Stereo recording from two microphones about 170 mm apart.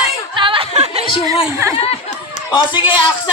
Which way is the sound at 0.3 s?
30° right (ahead or behind).